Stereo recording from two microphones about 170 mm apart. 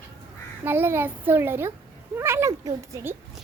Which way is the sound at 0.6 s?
15° right (ahead or behind).